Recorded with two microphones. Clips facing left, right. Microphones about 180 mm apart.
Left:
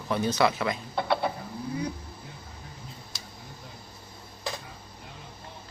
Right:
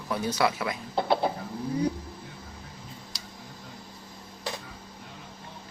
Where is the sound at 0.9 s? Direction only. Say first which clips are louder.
Right 4 dB; 25° right (ahead or behind).